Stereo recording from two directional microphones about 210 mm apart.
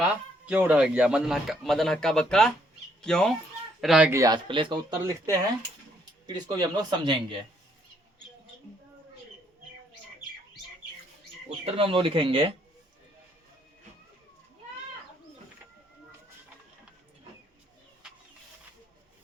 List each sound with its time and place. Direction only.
0.0 s a man's voice: 5° right (ahead or behind)
11.6 s speech: 25° right (ahead or behind)